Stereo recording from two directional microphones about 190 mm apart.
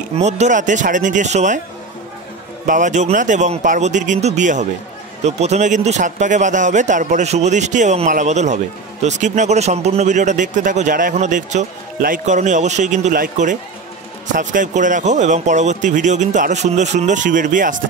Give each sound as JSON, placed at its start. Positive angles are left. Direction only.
{"t": 0.1, "sound": "a man's voice", "side_deg": -35}
{"t": 2.6, "sound": "a man's voice", "side_deg": -40}